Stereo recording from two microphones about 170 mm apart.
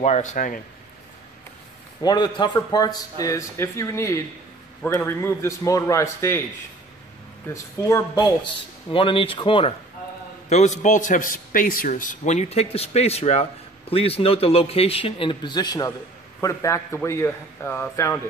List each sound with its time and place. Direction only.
0.0 s speech: 45° left (ahead or behind)
2.0 s a man's voice: 25° left (ahead or behind)
7.4 s a man's voice: 20° left (ahead or behind)
8.9 s a man's voice: 30° left (ahead or behind)
10.5 s a man's voice: 45° left (ahead or behind); by 18.2 s 15° left (ahead or behind)